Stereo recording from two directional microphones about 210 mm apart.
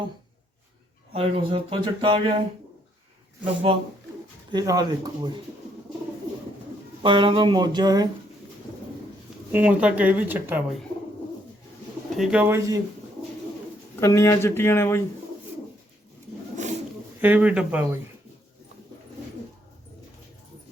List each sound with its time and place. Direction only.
1.1 s speech: 25° right (ahead or behind)
3.4 s speech: 30° right (ahead or behind)
4.5 s speech: 15° right (ahead or behind)
7.0 s speech: 25° right (ahead or behind)
9.5 s speech: 5° right (ahead or behind)
12.1 s speech: 5° right (ahead or behind)
14.0 s speech: 15° left (ahead or behind)
17.2 s speech: 10° right (ahead or behind)